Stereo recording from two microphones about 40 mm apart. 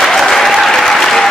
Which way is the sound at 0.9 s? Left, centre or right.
Centre.